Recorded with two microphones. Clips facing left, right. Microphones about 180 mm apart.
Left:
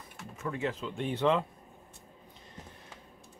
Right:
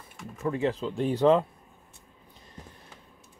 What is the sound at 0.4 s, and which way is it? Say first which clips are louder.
Speech: right 6 dB; 35° right (ahead or behind).